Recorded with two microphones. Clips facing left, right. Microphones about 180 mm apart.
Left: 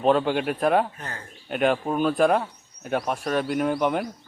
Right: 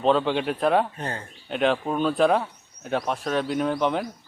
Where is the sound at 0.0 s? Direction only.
5° left (ahead or behind).